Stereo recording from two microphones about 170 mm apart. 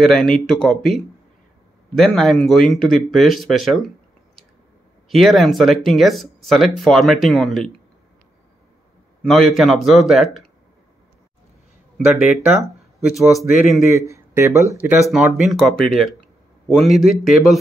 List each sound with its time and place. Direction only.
0.0 s speech: centre (ahead or behind)
5.1 s speech: centre (ahead or behind)
9.2 s speech: centre (ahead or behind)
12.0 s speech: 5° right (ahead or behind)
13.9 s speech: 15° right (ahead or behind)
15.0 s speech: centre (ahead or behind)